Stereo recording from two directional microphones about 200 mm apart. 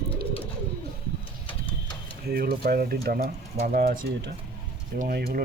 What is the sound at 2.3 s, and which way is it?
Speech, 50° right (ahead or behind).